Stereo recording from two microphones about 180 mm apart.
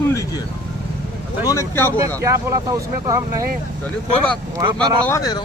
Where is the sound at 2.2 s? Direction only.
20° right (ahead or behind).